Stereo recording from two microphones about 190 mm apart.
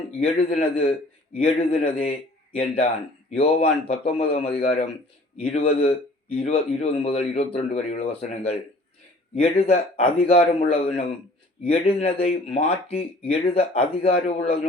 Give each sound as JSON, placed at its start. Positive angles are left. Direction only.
{"t": 0.2, "sound": "a man's voice", "side_deg": 35}